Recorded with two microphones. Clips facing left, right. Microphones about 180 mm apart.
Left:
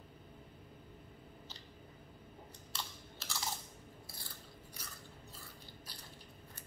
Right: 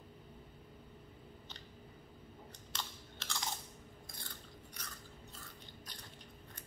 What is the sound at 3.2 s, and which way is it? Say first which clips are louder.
Chewing: right 1 dB; 5° left (ahead or behind).